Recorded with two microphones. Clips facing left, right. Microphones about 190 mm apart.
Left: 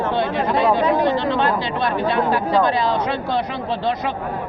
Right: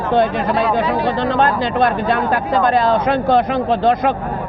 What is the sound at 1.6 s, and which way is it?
Speech, 50° right (ahead or behind).